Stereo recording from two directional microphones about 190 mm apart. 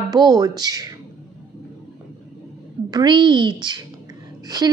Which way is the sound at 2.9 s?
25° right (ahead or behind).